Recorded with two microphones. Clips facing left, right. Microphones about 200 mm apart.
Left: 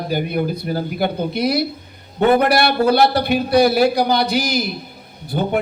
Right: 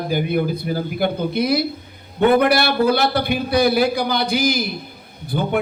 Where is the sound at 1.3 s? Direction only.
55° right (ahead or behind).